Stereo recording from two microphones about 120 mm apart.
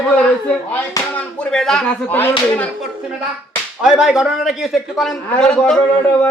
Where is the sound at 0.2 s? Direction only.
10° left (ahead or behind).